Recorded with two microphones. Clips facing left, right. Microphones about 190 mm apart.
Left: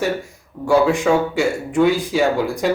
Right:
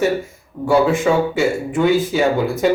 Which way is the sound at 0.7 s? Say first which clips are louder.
Even; centre (ahead or behind).